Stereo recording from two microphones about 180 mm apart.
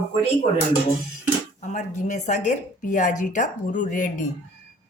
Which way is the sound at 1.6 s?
40° left (ahead or behind).